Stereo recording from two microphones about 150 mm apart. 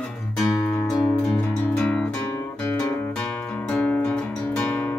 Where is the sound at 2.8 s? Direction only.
10° left (ahead or behind).